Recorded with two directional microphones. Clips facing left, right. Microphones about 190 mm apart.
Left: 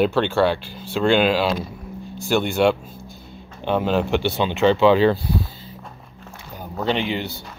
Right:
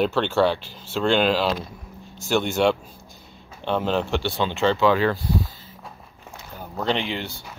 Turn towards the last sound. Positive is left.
turn(degrees=5)  # may be behind; listen again after turning